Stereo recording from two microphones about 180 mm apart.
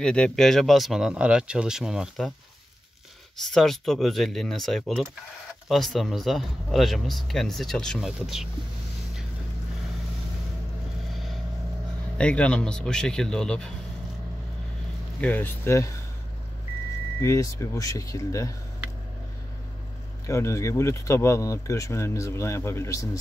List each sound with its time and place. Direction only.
0.0 s speech: 5° left (ahead or behind)
3.4 s speech: centre (ahead or behind)
12.2 s speech: 5° left (ahead or behind)
15.1 s speech: 10° left (ahead or behind)
17.2 s speech: 15° left (ahead or behind)
20.2 s speech: 15° left (ahead or behind)